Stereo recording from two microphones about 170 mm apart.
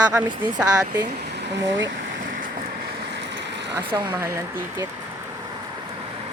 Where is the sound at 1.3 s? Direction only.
85° right.